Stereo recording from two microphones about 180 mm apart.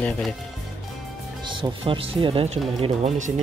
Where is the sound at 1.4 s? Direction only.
25° right (ahead or behind).